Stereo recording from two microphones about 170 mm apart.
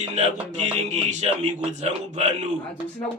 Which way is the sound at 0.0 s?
40° right (ahead or behind).